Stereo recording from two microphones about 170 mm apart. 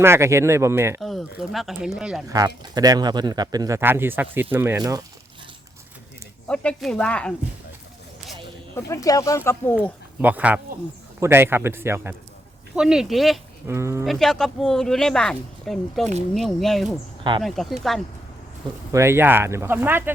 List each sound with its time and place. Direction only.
0.0 s speech: 15° right (ahead or behind)
1.0 s speech: centre (ahead or behind)
2.2 s speech: 20° right (ahead or behind)
6.5 s speech: 5° left (ahead or behind)
8.7 s speech: 20° left (ahead or behind)
10.2 s speech: 10° right (ahead or behind)
12.7 s speech: 5° right (ahead or behind)
13.7 s speech: 15° right (ahead or behind)
14.0 s speech: centre (ahead or behind)
18.9 s speech: 15° right (ahead or behind)